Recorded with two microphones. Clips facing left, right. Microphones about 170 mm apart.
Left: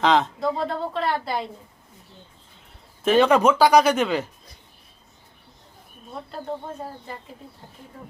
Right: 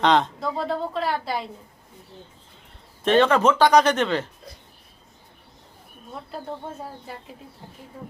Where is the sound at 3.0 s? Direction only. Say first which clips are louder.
Left 1 dB; 5° left (ahead or behind).